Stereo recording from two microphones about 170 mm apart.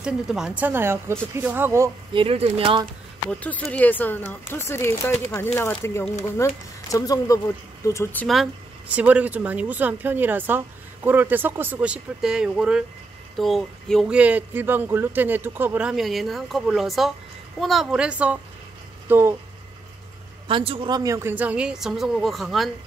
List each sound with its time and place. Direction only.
0.0 s speech: 5° right (ahead or behind)
2.1 s speech: 35° right (ahead or behind)
3.3 s speech: 10° left (ahead or behind)
8.9 s speech: 10° right (ahead or behind)
20.4 s speech: 30° right (ahead or behind); by 22.7 s centre (ahead or behind)